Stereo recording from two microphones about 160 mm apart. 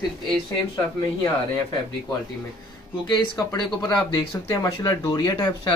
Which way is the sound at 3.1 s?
25° left (ahead or behind).